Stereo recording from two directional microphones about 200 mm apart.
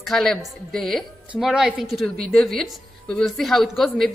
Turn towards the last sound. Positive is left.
turn(degrees=0)  # may be behind; listen again after turning